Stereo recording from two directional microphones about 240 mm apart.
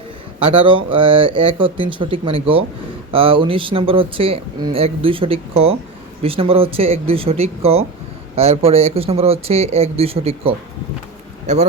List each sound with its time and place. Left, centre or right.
0.3 s a man's voice: right